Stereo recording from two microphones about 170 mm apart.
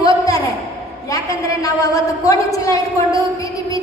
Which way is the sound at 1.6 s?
20° left (ahead or behind).